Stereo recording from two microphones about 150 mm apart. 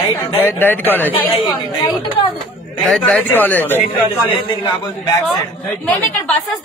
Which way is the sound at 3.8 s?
35° left (ahead or behind).